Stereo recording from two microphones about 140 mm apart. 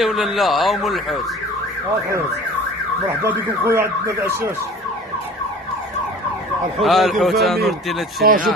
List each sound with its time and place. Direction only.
0.0 s a man's voice: centre (ahead or behind)
3.3 s car alarm: 15° right (ahead or behind)
6.8 s a man's voice: centre (ahead or behind)